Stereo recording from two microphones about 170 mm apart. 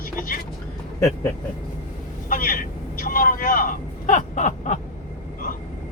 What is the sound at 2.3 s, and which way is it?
Speech, 55° left (ahead or behind).